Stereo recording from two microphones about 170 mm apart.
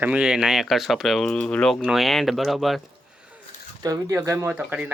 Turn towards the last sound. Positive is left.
turn(degrees=-10)  # may be behind; listen again after turning